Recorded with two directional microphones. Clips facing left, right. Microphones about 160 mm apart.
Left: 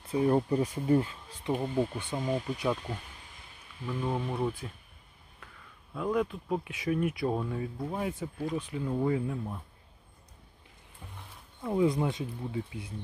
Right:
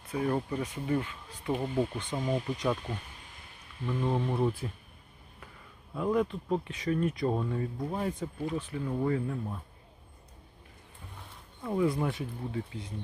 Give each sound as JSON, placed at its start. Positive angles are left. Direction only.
{"t": 0.1, "sound": "speech", "side_deg": 25}
{"t": 1.5, "sound": "speech", "side_deg": 0}
{"t": 5.9, "sound": "speech", "side_deg": 0}
{"t": 8.5, "sound": "speech", "side_deg": 15}
{"t": 11.6, "sound": "speech", "side_deg": 15}